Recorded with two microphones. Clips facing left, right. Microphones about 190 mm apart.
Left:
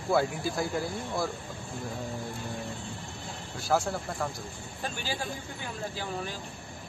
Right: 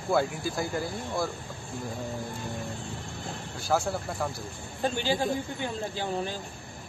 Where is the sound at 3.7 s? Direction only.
Centre (ahead or behind).